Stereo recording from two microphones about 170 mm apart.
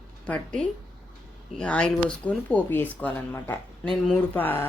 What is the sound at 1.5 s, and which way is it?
Speech, 5° left (ahead or behind).